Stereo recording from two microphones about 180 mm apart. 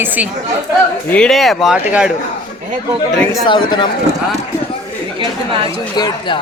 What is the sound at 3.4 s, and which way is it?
Speech, 25° left (ahead or behind).